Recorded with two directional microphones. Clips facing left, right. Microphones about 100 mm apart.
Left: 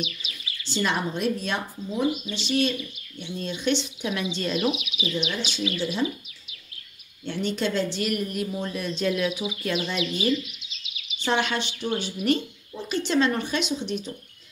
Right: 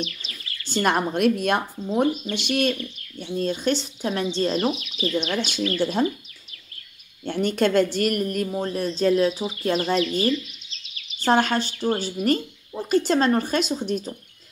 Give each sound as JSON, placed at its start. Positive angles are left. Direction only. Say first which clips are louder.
{"t": 0.0, "sound": "speech", "louder": "right 2 dB", "side_deg": 10}
{"t": 0.7, "sound": "a woman's voice", "louder": "right 4 dB", "side_deg": -50}
{"t": 3.2, "sound": "speech", "louder": "right 7 dB", "side_deg": -40}
{"t": 4.7, "sound": "speech", "louder": "left 2 dB", "side_deg": 10}
{"t": 5.0, "sound": "a woman's voice", "louder": "right 5 dB", "side_deg": -50}
{"t": 7.2, "sound": "a woman's voice", "louder": "right 5 dB", "side_deg": -50}
{"t": 10.6, "sound": "bird", "louder": "left 1 dB", "side_deg": 5}
{"t": 11.2, "sound": "speech", "louder": "right 5 dB", "side_deg": -40}